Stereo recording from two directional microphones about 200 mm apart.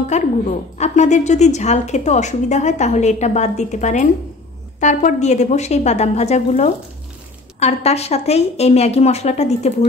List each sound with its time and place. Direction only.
0.1 s a woman's voice: 35° left (ahead or behind)